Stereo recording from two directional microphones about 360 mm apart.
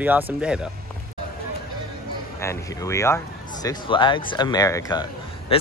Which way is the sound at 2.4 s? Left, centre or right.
Centre.